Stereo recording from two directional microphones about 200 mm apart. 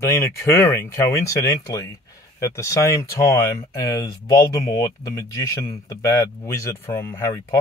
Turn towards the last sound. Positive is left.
turn(degrees=15)  # may be behind; listen again after turning